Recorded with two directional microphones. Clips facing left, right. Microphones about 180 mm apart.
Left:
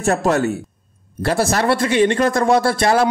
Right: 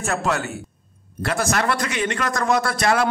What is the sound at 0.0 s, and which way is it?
A man's voice, 40° left (ahead or behind).